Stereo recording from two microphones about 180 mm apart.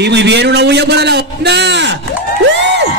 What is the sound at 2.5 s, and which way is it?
Crowd, 75° right (ahead or behind).